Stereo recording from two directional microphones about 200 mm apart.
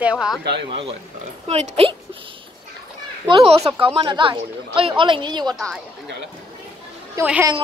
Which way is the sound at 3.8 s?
25° right (ahead or behind).